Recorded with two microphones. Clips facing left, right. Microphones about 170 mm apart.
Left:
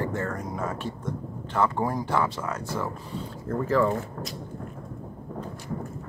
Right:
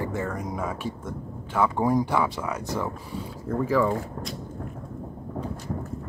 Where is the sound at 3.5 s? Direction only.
Centre (ahead or behind).